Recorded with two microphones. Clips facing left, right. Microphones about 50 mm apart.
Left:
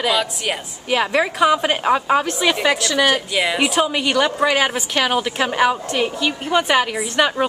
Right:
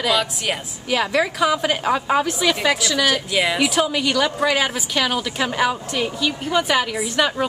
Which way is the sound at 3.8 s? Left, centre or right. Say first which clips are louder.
Left 2 dB; centre.